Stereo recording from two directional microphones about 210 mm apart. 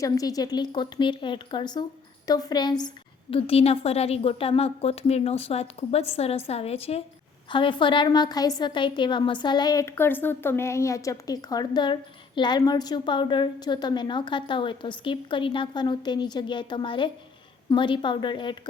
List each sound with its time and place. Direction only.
0.0 s a woman's voice: 15° left (ahead or behind)